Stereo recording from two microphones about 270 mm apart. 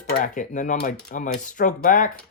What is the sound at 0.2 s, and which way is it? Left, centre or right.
Speech, left.